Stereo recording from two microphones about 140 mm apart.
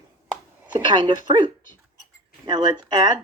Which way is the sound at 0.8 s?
35° right (ahead or behind).